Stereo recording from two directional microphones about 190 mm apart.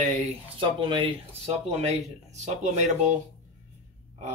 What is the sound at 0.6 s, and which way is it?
Speech, 25° right (ahead or behind).